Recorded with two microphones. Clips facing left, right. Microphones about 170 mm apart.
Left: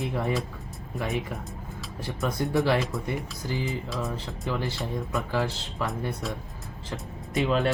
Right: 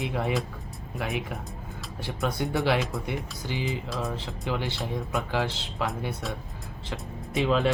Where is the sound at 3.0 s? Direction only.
90° right.